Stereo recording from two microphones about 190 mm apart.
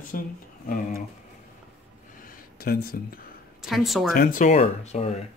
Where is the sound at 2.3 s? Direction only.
50° left (ahead or behind).